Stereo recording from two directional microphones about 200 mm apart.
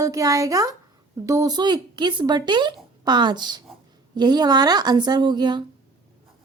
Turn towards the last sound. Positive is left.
turn(degrees=-20)  # may be behind; listen again after turning